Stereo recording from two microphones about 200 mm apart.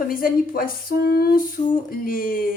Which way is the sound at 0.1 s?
45° left (ahead or behind).